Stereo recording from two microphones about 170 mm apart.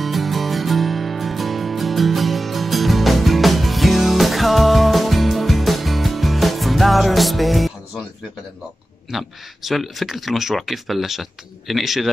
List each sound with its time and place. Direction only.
0.0 s music: centre (ahead or behind)
9.1 s speech: centre (ahead or behind)